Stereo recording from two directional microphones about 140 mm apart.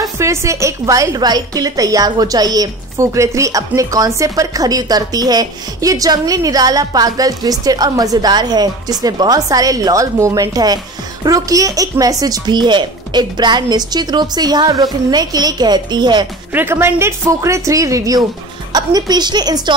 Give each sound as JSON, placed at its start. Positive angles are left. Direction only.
{"t": 0.0, "sound": "a woman's voice", "side_deg": -20}
{"t": 16.5, "sound": "a woman's voice", "side_deg": -15}